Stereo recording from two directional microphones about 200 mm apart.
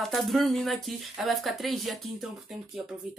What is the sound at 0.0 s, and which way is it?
Speech, centre (ahead or behind).